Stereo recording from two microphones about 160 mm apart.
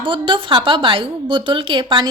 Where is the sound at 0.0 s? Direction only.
30° right (ahead or behind).